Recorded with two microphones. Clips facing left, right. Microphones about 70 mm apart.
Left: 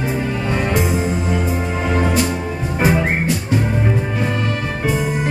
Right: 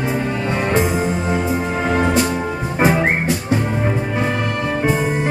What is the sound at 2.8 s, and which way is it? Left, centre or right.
Music, right.